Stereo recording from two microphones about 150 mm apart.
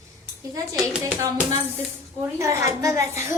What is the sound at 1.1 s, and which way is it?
A woman's voice, 20° right (ahead or behind).